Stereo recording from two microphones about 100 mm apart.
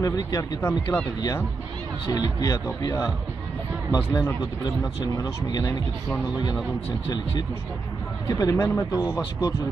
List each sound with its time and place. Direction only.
0.0 s speech: 40° left (ahead or behind)
0.6 s speech: 25° left (ahead or behind)
2.1 s speech: 40° left (ahead or behind)
8.3 s speech: 35° left (ahead or behind)